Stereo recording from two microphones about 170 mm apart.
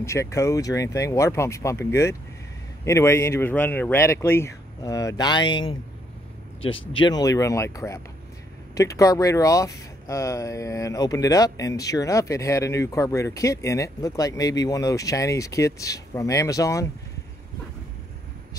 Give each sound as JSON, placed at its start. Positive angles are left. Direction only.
{"t": 0.0, "sound": "speech", "side_deg": 15}